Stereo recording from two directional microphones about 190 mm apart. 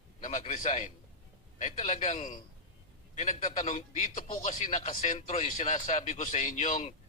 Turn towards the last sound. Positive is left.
turn(degrees=40)  # may be behind; listen again after turning